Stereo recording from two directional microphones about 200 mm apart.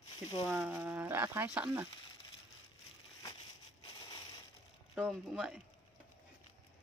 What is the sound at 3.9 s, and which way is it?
Crushing, 20° left (ahead or behind).